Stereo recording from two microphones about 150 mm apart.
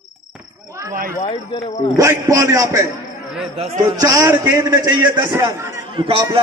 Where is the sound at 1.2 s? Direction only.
35° left (ahead or behind).